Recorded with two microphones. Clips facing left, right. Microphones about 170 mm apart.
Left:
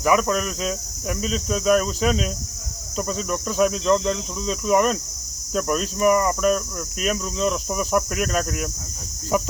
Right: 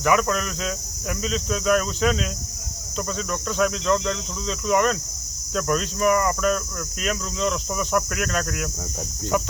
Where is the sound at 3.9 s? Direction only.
20° left (ahead or behind).